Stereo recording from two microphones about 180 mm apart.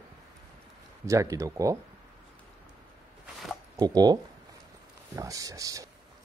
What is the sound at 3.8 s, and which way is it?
Speech, 20° right (ahead or behind).